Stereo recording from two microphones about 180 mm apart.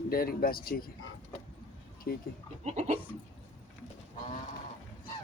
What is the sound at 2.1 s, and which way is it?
Speech, 55° left (ahead or behind).